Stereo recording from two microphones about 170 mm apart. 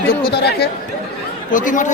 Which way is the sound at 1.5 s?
50° left (ahead or behind).